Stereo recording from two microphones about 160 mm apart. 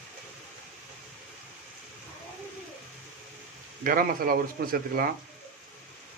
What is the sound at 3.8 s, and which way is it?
Speech, 65° right (ahead or behind).